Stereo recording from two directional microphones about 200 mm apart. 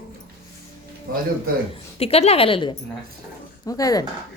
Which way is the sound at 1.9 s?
30° left (ahead or behind).